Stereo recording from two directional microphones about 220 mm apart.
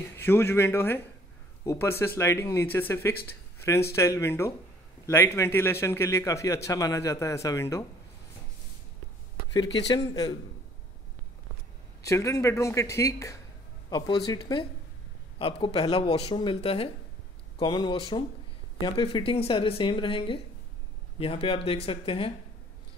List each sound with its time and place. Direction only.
0.1 s a man's voice: 10° left (ahead or behind)
9.8 s a man's voice: 15° left (ahead or behind)
12.0 s a man's voice: 15° left (ahead or behind)